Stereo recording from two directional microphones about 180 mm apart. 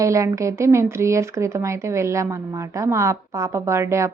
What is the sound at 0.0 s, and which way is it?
Speech, 15° right (ahead or behind).